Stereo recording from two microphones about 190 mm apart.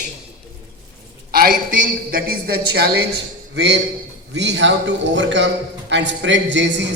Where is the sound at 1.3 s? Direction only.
55° right (ahead or behind).